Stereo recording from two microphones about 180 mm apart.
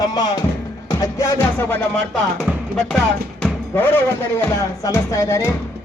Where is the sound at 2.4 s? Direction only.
Centre (ahead or behind).